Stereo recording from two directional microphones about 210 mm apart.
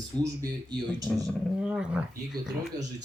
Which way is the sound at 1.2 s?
5° right (ahead or behind).